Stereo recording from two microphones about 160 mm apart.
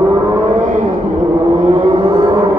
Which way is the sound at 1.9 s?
25° right (ahead or behind).